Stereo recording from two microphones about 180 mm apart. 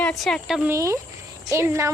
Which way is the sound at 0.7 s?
15° right (ahead or behind).